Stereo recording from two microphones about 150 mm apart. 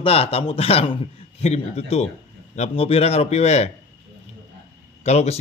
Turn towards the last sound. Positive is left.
turn(degrees=45)  # may be behind; listen again after turning